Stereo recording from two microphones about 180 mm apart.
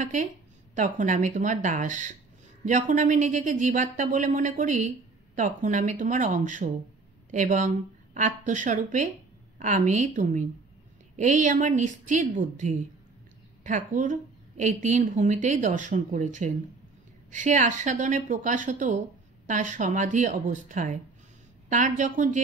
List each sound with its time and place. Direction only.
0.0 s speech: 45° right (ahead or behind)